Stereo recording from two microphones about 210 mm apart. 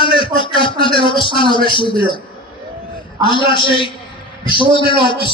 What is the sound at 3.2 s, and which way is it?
A man's voice, 25° left (ahead or behind).